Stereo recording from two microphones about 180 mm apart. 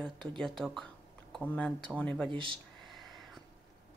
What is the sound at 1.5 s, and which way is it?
Speech, 5° left (ahead or behind).